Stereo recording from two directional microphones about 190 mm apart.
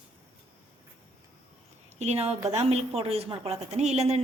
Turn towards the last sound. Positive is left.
turn(degrees=-35)  # may be behind; listen again after turning